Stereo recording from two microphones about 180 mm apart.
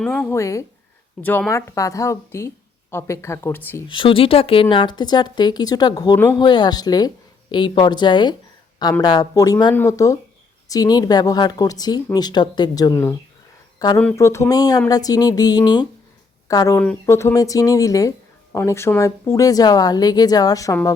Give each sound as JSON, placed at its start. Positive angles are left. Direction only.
{"t": 0.0, "sound": "speech", "side_deg": 0}
{"t": 0.3, "sound": "speech", "side_deg": 15}
{"t": 3.8, "sound": "speech", "side_deg": 30}